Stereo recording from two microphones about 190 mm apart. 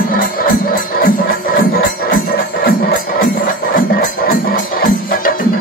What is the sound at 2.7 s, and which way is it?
Music, 50° left (ahead or behind).